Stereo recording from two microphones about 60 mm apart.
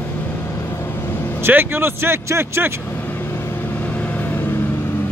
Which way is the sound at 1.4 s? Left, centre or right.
Right.